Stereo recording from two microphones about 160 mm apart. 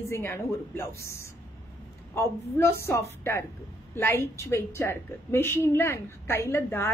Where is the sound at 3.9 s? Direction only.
15° left (ahead or behind).